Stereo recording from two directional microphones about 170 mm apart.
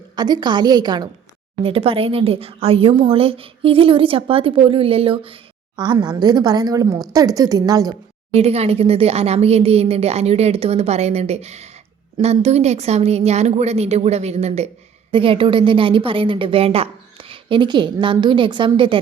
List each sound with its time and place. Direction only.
0.2 s a woman's voice: 25° right (ahead or behind)
8.3 s a woman's voice: 35° right (ahead or behind)